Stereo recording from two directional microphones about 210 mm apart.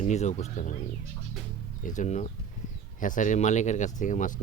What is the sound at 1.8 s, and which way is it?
Speech, 35° left (ahead or behind).